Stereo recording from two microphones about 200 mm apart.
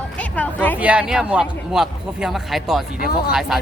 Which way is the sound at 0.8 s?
5° right (ahead or behind).